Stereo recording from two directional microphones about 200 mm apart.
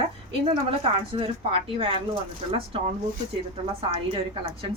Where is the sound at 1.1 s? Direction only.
25° right (ahead or behind).